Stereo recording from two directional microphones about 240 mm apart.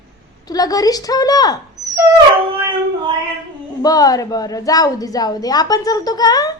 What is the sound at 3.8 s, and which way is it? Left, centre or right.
A woman's voice, centre.